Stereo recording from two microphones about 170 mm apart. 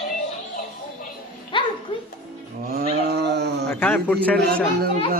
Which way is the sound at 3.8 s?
10° left (ahead or behind).